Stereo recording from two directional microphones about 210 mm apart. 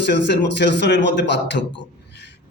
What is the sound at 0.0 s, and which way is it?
A man's voice, 55° left (ahead or behind).